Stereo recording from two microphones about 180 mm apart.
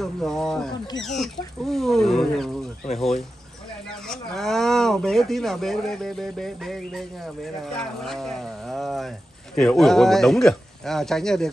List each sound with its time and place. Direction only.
0.0 s speech: centre (ahead or behind)